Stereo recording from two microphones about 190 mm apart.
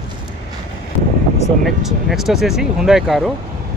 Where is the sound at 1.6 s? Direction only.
Centre (ahead or behind).